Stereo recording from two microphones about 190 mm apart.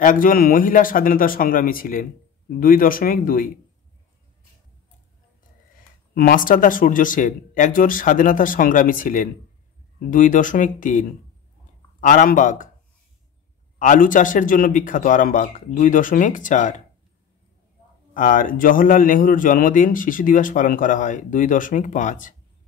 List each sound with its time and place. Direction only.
0.0 s a man's voice: 45° left (ahead or behind)
6.1 s a man's voice: 45° left (ahead or behind)
13.7 s a man's voice: 45° left (ahead or behind)
18.1 s a man's voice: 45° left (ahead or behind)